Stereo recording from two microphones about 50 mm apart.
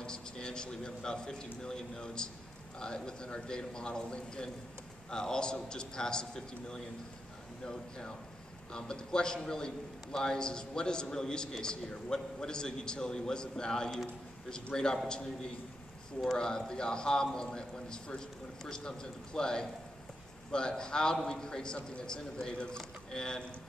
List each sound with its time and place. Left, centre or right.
0.0 s a man's voice: centre
8.7 s a man's voice: centre